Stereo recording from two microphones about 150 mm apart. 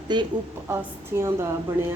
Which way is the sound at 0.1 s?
30° right (ahead or behind).